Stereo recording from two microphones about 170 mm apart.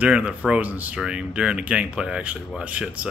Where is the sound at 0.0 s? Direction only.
5° right (ahead or behind).